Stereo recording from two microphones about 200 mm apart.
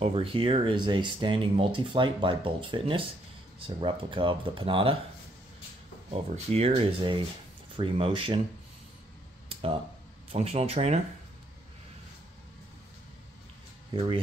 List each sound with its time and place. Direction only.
0.0 s speech: 25° right (ahead or behind)
6.1 s speech: 30° right (ahead or behind)
9.5 s a sound: 30° right (ahead or behind)
10.3 s speech: 30° right (ahead or behind)